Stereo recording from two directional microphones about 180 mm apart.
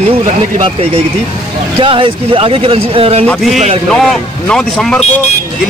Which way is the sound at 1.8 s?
30° right (ahead or behind).